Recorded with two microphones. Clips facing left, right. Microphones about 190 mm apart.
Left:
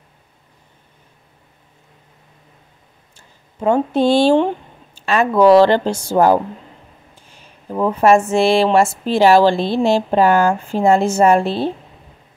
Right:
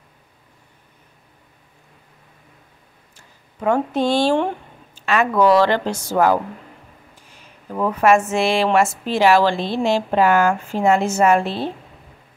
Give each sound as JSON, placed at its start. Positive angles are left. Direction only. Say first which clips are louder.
{"t": 3.2, "sound": "speech", "louder": "left 4 dB", "side_deg": 25}
{"t": 7.6, "sound": "a woman's voice", "louder": "left 3 dB", "side_deg": 25}